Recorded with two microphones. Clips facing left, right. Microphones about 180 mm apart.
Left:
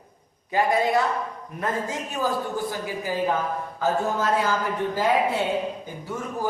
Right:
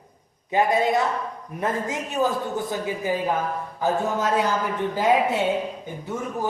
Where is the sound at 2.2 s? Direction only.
20° right (ahead or behind).